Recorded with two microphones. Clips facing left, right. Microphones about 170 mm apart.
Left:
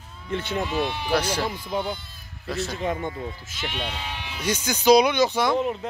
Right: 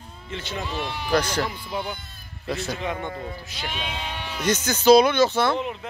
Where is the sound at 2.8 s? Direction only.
45° left (ahead or behind).